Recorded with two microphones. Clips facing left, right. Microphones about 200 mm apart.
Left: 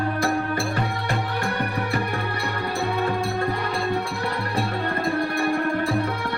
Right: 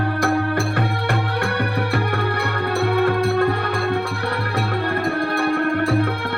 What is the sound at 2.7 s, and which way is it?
Music, 65° right (ahead or behind).